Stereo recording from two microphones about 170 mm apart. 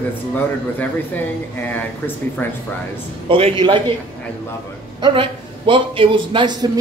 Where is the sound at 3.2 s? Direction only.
30° right (ahead or behind).